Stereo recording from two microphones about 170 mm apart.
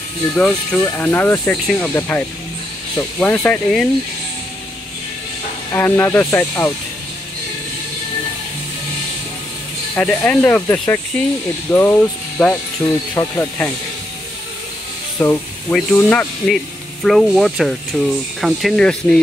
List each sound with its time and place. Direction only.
0.4 s speech: 10° left (ahead or behind)
5.7 s speech: 10° left (ahead or behind)
9.9 s speech: 5° left (ahead or behind)
15.2 s speech: 10° left (ahead or behind)